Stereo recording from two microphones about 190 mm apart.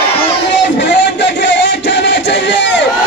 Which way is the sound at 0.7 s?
65° left (ahead or behind).